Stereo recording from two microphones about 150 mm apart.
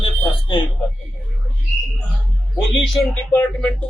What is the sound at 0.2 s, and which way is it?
Speech, 30° left (ahead or behind).